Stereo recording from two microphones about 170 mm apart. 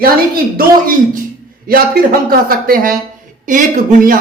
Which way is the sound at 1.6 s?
60° right (ahead or behind).